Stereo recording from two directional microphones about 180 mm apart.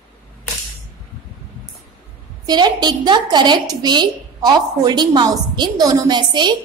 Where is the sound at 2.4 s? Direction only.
25° right (ahead or behind).